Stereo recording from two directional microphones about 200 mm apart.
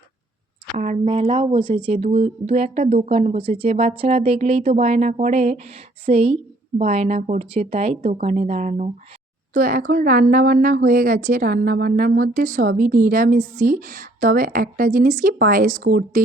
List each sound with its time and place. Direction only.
0.8 s speech: 30° right (ahead or behind)